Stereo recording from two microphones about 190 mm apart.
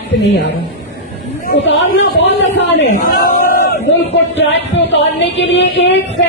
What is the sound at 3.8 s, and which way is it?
Speech, 70° left (ahead or behind).